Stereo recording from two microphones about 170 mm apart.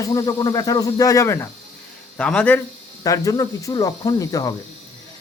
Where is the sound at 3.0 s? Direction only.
20° left (ahead or behind).